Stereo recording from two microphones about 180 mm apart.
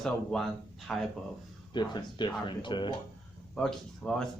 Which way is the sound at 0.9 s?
5° left (ahead or behind).